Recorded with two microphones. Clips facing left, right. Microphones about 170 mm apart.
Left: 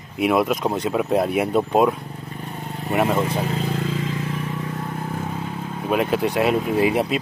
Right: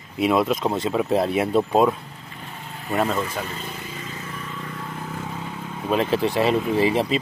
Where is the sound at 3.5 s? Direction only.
70° left (ahead or behind).